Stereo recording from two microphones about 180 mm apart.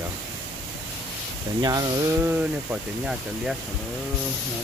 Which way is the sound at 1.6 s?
20° right (ahead or behind).